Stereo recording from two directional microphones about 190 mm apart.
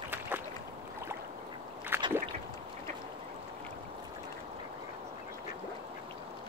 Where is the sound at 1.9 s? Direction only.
10° right (ahead or behind).